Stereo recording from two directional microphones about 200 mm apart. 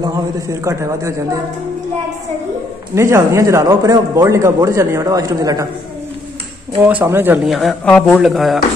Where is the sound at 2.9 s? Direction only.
15° right (ahead or behind).